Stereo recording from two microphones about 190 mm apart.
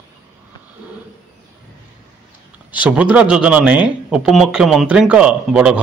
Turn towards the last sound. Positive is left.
turn(degrees=-5)  # may be behind; listen again after turning